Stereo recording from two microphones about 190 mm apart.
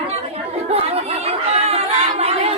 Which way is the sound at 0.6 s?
35° right (ahead or behind).